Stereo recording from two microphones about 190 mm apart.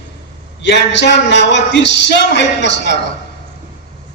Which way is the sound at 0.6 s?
70° left (ahead or behind).